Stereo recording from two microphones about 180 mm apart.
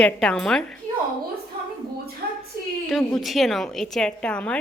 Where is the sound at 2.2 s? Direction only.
60° right (ahead or behind).